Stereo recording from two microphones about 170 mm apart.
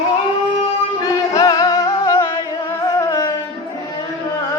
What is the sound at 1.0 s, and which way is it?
Music, 25° left (ahead or behind).